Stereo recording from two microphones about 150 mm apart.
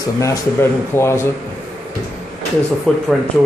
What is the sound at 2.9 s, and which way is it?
Speech, 5° left (ahead or behind).